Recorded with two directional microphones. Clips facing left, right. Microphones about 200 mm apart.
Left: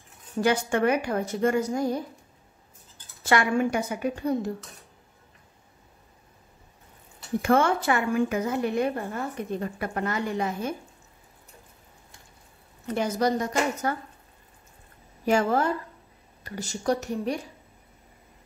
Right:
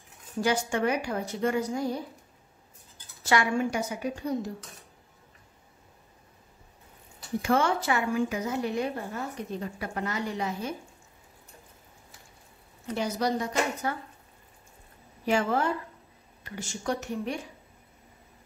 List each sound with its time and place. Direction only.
0.4 s a woman's voice: 60° left (ahead or behind)
3.3 s a woman's voice: 55° left (ahead or behind)
7.4 s a woman's voice: 55° left (ahead or behind)
12.9 s a woman's voice: 50° left (ahead or behind)
15.2 s speech: 40° left (ahead or behind)